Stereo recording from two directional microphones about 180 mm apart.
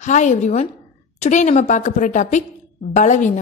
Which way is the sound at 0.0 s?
40° left (ahead or behind).